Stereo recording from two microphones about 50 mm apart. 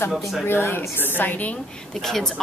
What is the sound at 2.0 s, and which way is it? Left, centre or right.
Speech, centre.